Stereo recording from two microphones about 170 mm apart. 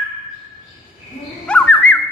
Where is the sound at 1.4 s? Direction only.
5° left (ahead or behind).